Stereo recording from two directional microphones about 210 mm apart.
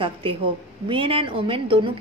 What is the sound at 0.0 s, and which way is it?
A woman's voice, 25° right (ahead or behind).